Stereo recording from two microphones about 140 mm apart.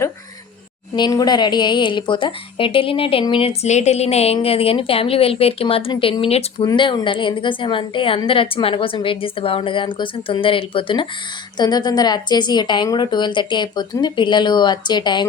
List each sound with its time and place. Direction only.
0.9 s a woman's voice: 30° left (ahead or behind)